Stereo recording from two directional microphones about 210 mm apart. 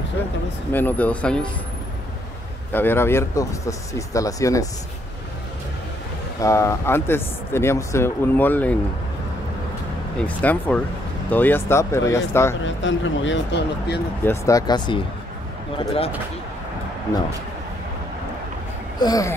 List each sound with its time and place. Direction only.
0.7 s speech: 10° left (ahead or behind)
2.7 s speech: 10° left (ahead or behind)
6.4 s speech: 15° left (ahead or behind)
10.2 s speech: 5° left (ahead or behind)
12.6 s speech: 60° left (ahead or behind)
14.2 s speech: 15° left (ahead or behind)
17.1 s speech: 15° left (ahead or behind)
18.9 s speech: 15° left (ahead or behind)